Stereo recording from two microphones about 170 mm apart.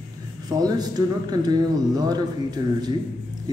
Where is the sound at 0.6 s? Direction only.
25° right (ahead or behind).